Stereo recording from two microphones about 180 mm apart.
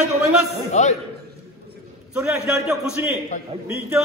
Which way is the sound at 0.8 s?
40° left (ahead or behind).